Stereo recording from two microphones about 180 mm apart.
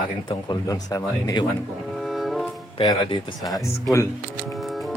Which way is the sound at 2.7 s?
25° left (ahead or behind).